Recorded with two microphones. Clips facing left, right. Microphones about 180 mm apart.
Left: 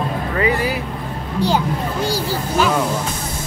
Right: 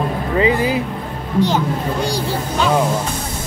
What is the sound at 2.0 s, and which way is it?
Speech, 5° left (ahead or behind).